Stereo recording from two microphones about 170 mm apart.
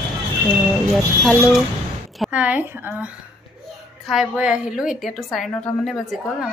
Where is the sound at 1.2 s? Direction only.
Centre (ahead or behind).